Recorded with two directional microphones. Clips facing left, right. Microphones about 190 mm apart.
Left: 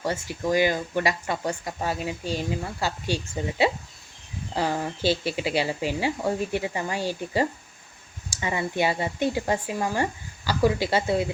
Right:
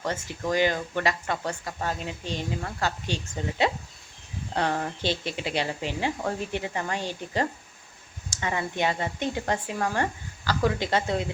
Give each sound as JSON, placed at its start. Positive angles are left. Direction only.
{"t": 0.0, "sound": "speech", "side_deg": 10}
{"t": 4.5, "sound": "speech", "side_deg": 5}